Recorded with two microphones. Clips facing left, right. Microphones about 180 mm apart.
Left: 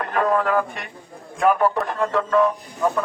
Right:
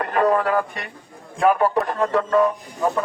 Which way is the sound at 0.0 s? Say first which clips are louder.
Right 2 dB; 15° right (ahead or behind).